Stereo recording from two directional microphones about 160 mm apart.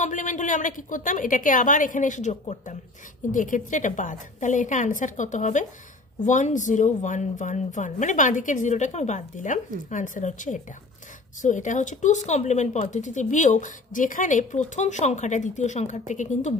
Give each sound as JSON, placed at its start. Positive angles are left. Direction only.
{"t": 0.0, "sound": "a woman's voice", "side_deg": 55}